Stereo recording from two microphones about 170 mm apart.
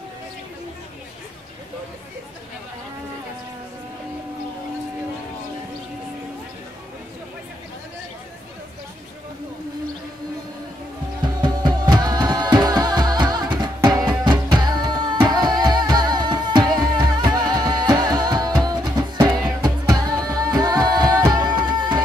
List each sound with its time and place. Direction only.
11.4 s music: 25° right (ahead or behind)